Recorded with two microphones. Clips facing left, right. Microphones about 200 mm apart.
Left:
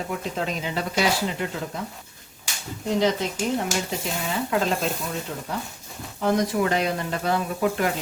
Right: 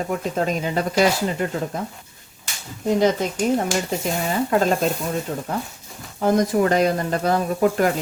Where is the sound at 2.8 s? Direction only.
50° right (ahead or behind).